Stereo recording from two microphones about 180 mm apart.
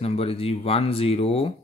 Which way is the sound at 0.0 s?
35° left (ahead or behind).